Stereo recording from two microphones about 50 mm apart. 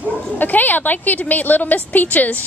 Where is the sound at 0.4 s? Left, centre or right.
Left.